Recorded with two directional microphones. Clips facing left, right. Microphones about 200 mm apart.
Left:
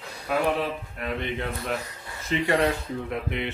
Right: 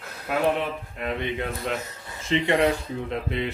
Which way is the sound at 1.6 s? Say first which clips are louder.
Right 1 dB; 20° right (ahead or behind).